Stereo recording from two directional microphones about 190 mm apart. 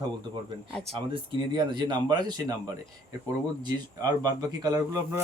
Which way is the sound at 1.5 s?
25° right (ahead or behind).